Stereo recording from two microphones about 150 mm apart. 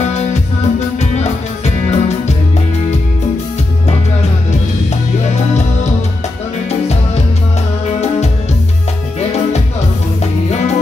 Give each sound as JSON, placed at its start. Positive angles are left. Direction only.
{"t": 0.1, "sound": "music", "side_deg": 50}